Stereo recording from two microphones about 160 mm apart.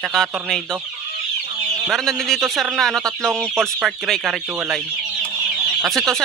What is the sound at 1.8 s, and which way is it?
Speech, centre (ahead or behind).